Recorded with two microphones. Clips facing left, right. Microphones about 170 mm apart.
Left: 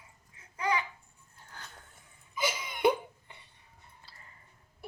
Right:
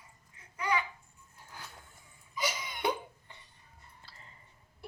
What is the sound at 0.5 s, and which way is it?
Babbling, 30° left (ahead or behind).